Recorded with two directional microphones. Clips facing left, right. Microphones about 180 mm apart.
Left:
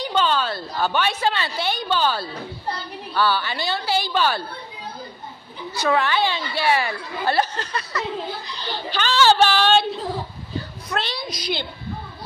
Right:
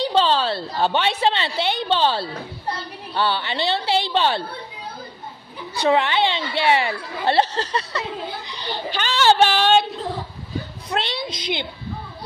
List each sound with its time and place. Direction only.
0.0 s a woman's voice: 30° right (ahead or behind)
5.9 s a woman's voice: 20° right (ahead or behind)
8.5 s a child's voice: 20° right (ahead or behind)
10.9 s a woman's voice: 25° right (ahead or behind)